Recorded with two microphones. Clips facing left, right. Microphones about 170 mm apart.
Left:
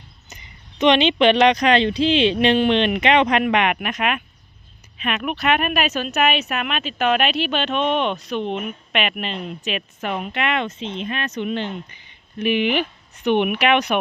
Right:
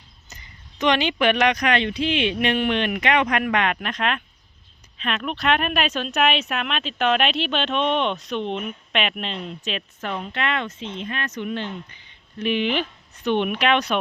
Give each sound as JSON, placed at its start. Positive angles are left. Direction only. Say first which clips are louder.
{"t": 0.3, "sound": "speech", "louder": "left 1 dB", "side_deg": 20}
{"t": 12.4, "sound": "speech", "louder": "left 3 dB", "side_deg": 10}